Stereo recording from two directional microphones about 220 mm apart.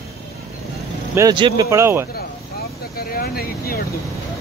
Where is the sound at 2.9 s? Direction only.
45° left (ahead or behind).